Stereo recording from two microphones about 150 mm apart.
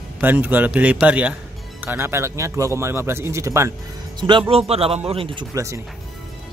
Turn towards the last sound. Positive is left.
turn(degrees=-20)  # may be behind; listen again after turning